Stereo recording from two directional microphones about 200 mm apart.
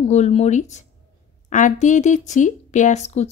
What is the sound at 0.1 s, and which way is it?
Speech, 35° left (ahead or behind).